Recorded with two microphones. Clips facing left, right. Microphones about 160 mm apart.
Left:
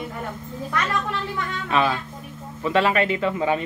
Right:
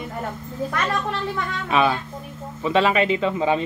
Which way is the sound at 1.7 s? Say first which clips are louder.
Right 2 dB; 15° right (ahead or behind).